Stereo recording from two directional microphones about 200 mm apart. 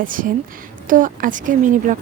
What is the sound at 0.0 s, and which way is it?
A woman's voice, 45° right (ahead or behind).